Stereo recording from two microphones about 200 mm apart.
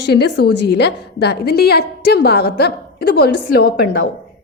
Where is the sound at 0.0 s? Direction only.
55° left (ahead or behind).